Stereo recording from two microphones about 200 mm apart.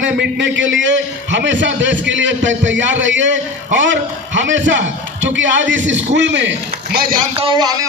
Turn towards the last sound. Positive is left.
turn(degrees=-20)  # may be behind; listen again after turning